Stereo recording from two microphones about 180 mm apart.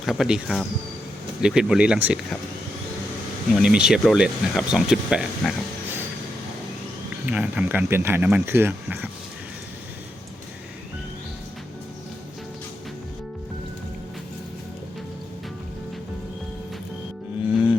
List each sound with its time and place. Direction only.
0.0 s speech: centre (ahead or behind)
3.6 s speech: 5° right (ahead or behind)
7.3 s speech: 5° right (ahead or behind)
17.4 s music: 10° right (ahead or behind)